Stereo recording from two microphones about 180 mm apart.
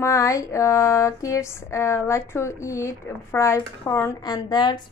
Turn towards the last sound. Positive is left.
turn(degrees=25)  # may be behind; listen again after turning